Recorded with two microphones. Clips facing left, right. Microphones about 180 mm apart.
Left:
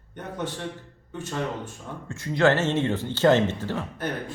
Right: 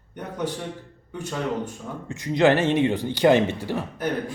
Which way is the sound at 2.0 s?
15° right (ahead or behind).